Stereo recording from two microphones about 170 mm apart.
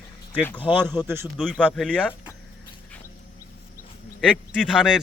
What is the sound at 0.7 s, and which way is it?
Speech, 25° left (ahead or behind).